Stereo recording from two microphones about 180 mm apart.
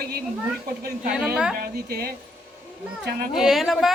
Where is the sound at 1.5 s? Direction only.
60° right (ahead or behind).